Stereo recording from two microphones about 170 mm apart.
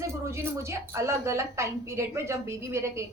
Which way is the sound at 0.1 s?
15° right (ahead or behind).